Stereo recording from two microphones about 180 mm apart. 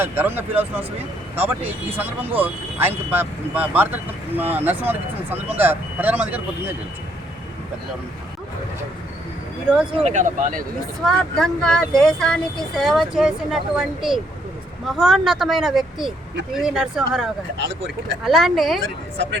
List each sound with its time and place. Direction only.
0.0 s speech: 10° right (ahead or behind)
1.9 s speech: 10° right (ahead or behind)
9.6 s speech: 5° right (ahead or behind)
10.0 s speech: 40° right (ahead or behind)
11.0 s speech: 5° left (ahead or behind)